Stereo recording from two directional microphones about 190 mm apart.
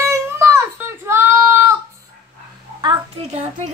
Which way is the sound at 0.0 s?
15° right (ahead or behind).